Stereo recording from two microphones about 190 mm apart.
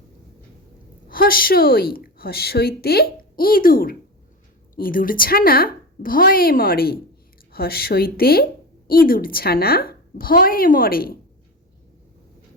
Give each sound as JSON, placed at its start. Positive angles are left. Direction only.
{"t": 1.0, "sound": "a woman's voice", "side_deg": 50}